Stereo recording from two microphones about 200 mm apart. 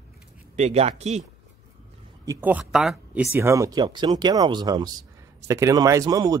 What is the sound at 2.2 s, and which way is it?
Speech, 10° right (ahead or behind).